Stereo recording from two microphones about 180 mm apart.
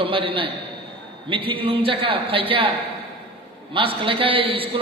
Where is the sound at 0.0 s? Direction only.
30° right (ahead or behind).